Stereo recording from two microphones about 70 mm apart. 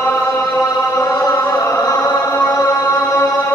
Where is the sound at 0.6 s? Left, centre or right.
Left.